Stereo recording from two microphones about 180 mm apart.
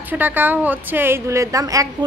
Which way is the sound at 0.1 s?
10° right (ahead or behind).